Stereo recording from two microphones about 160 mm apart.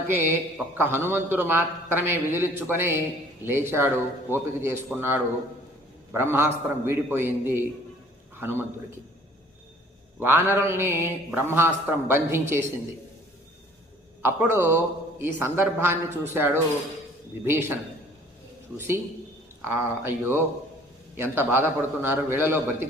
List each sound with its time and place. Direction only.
0.1 s a man's voice: 15° right (ahead or behind)
10.2 s a man's voice: 15° right (ahead or behind)
14.2 s a man's voice: 15° right (ahead or behind)
19.6 s a man's voice: 15° right (ahead or behind)